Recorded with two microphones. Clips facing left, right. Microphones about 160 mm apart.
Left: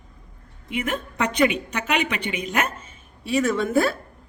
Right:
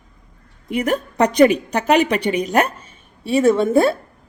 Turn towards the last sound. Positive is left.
turn(degrees=-25)  # may be behind; listen again after turning